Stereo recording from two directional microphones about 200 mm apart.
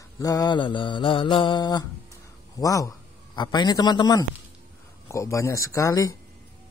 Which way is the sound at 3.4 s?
20° left (ahead or behind).